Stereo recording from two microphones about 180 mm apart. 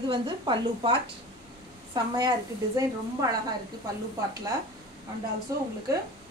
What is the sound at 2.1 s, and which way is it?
A woman's voice, 20° right (ahead or behind).